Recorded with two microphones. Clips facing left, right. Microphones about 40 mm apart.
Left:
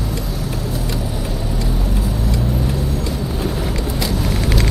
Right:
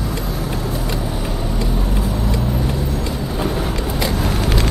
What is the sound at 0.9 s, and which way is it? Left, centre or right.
Vehicle, centre.